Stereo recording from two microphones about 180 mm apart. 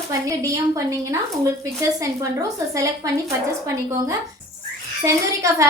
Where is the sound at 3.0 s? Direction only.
20° right (ahead or behind).